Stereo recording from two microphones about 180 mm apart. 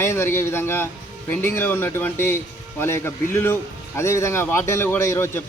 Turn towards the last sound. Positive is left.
turn(degrees=15)  # may be behind; listen again after turning